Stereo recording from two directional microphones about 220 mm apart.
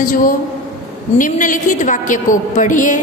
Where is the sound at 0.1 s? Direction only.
40° left (ahead or behind).